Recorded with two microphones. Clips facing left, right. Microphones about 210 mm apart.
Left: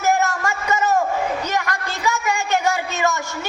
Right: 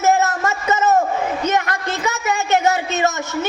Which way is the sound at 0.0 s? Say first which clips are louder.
Right 3 dB; 20° right (ahead or behind).